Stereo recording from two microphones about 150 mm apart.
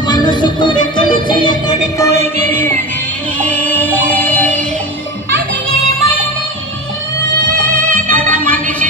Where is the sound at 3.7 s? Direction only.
10° left (ahead or behind).